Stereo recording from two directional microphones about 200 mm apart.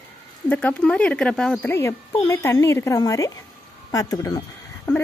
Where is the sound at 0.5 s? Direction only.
5° left (ahead or behind).